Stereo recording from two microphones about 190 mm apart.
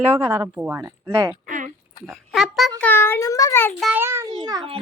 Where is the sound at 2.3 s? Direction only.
Centre (ahead or behind).